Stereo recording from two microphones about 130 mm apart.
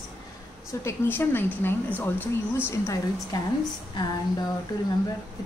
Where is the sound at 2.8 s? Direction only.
25° left (ahead or behind).